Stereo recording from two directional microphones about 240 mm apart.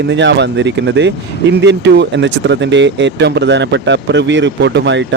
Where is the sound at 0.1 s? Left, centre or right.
Right.